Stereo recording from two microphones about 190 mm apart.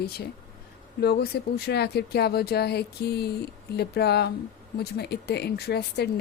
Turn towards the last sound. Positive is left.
turn(degrees=60)  # may be behind; listen again after turning